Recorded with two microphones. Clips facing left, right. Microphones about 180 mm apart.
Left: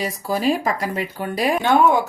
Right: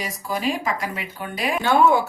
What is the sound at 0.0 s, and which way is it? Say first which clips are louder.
Speech: left 5 dB; 35° left (ahead or behind).